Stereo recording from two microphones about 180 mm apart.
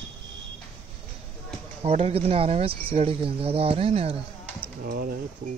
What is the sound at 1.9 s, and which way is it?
Speech, 35° right (ahead or behind).